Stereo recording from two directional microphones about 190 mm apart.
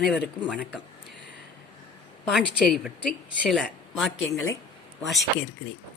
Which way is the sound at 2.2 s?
Centre (ahead or behind).